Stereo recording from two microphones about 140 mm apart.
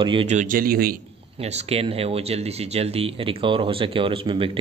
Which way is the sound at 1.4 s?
50° right (ahead or behind).